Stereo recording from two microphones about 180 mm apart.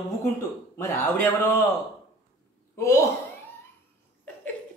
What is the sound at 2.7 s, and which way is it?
Speech, 15° left (ahead or behind).